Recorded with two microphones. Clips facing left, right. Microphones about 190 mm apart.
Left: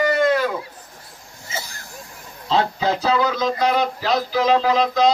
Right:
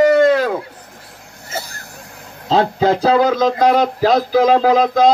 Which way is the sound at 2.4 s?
45° right (ahead or behind).